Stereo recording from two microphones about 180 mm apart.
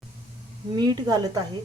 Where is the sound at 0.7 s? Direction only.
20° right (ahead or behind).